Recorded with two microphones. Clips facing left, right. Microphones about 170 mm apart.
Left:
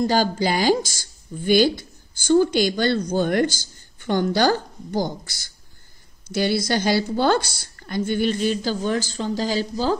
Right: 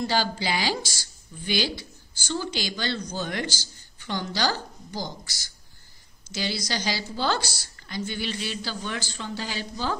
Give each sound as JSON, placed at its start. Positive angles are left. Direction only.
{"t": 0.0, "sound": "a woman's voice", "side_deg": 45}